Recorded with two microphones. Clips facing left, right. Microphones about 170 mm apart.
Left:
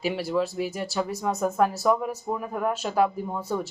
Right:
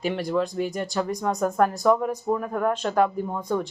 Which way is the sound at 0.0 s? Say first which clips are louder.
Right 1 dB; 5° left (ahead or behind).